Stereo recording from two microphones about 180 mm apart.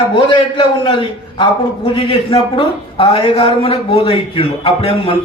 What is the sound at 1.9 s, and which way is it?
A man's voice, 30° left (ahead or behind).